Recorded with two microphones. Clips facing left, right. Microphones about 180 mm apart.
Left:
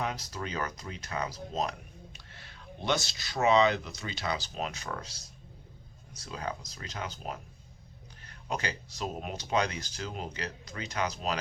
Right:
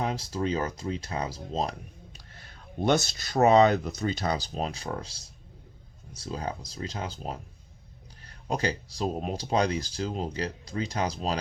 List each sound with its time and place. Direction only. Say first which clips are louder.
0.0 s speech: right 6 dB; 30° right (ahead or behind)
2.1 s speech: right 1 dB; 45° right (ahead or behind)